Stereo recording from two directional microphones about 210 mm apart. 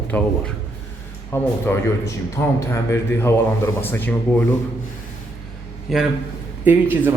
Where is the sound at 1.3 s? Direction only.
10° left (ahead or behind).